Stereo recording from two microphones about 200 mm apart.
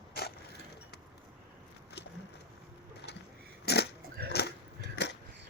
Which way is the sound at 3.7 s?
55° left (ahead or behind).